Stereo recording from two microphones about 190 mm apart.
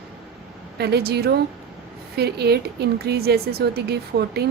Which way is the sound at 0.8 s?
55° right (ahead or behind).